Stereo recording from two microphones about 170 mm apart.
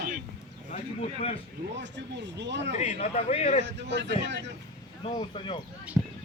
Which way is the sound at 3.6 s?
90° right.